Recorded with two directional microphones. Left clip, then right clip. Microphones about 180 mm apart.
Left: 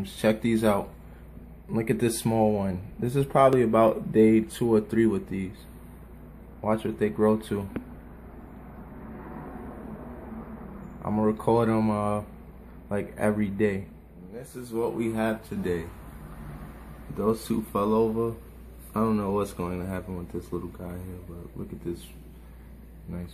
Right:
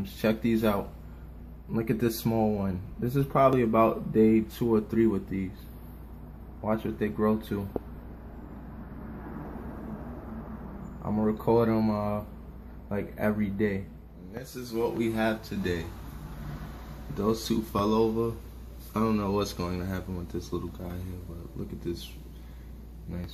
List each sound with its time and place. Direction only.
0.0 s speech: 15° left (ahead or behind)
6.6 s speech: 20° left (ahead or behind)
11.1 s speech: 15° left (ahead or behind)
17.2 s speech: centre (ahead or behind)